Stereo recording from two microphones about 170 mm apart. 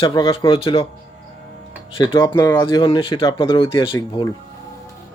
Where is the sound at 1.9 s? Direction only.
30° left (ahead or behind).